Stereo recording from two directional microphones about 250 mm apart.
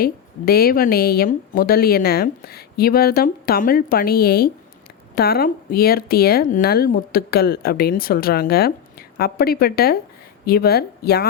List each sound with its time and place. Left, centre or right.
0.0 s speech: left